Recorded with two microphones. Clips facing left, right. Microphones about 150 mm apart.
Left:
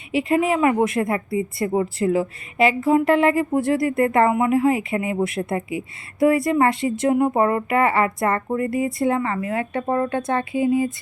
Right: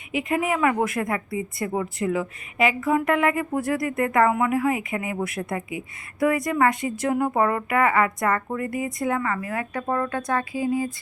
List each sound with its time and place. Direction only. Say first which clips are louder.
0.1 s speech: left 5 dB; 30° left (ahead or behind)